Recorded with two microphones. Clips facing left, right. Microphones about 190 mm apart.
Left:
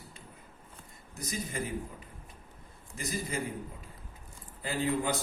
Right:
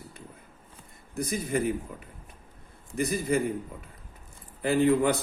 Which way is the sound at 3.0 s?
60° right (ahead or behind).